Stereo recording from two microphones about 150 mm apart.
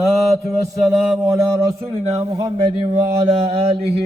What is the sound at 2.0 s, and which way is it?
Speech, 45° right (ahead or behind).